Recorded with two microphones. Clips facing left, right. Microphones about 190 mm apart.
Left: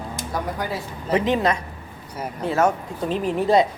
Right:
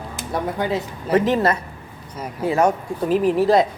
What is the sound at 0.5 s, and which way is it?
Speech, 20° right (ahead or behind).